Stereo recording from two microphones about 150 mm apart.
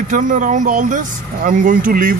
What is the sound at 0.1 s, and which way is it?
Speech, 60° right (ahead or behind).